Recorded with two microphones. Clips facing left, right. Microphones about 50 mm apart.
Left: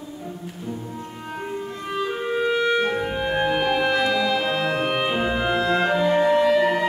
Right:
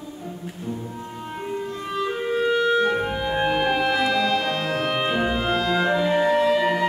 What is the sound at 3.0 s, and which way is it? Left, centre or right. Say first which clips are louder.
Music: even; centre.